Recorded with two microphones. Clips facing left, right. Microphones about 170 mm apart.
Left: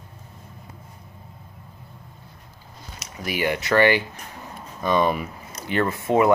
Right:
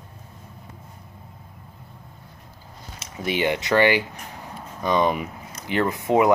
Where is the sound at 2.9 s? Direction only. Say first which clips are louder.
Right 3 dB; 25° right (ahead or behind).